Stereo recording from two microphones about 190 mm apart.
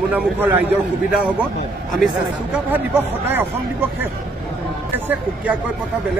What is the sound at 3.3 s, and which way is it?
Speech, 10° right (ahead or behind).